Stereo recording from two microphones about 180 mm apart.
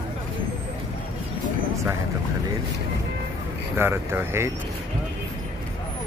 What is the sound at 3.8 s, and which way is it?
Speech, 15° right (ahead or behind).